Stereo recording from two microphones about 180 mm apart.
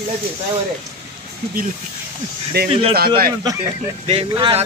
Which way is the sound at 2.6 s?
60° right (ahead or behind).